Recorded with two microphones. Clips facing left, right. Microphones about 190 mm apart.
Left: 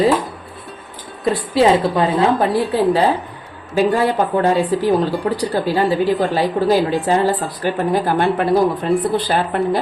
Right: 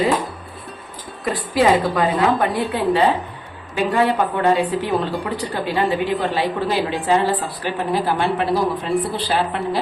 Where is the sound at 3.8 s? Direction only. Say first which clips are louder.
Left 3 dB; 35° left (ahead or behind).